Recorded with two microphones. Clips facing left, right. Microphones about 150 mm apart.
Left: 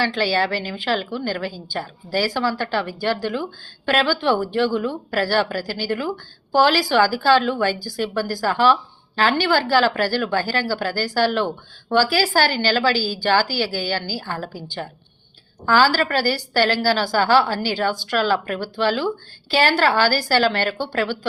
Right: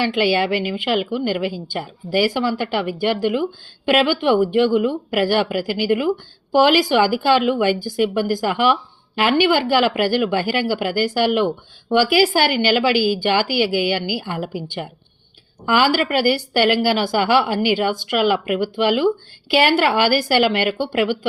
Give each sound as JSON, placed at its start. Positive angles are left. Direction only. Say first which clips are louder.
{"t": 0.2, "sound": "a woman's voice", "louder": "right 3 dB", "side_deg": -15}
{"t": 13.0, "sound": "a woman's voice", "louder": "right 7 dB", "side_deg": -55}
{"t": 13.6, "sound": "a woman's voice", "louder": "right 5 dB", "side_deg": -15}
{"t": 16.2, "sound": "a woman's voice", "louder": "right 4 dB", "side_deg": -55}
{"t": 16.6, "sound": "a woman's voice", "louder": "right 1 dB", "side_deg": -15}